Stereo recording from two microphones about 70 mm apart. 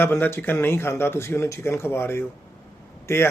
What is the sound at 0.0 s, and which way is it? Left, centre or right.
Speech, left.